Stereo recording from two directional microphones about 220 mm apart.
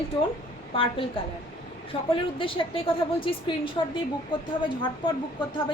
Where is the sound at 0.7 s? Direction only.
25° left (ahead or behind).